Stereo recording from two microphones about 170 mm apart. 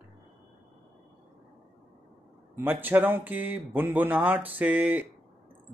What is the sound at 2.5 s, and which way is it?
Speech, 10° right (ahead or behind).